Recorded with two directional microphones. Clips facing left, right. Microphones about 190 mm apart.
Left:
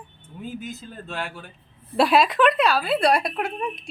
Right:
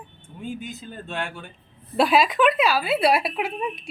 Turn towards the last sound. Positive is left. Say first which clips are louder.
# even
turn(degrees=-5)  # may be behind; listen again after turning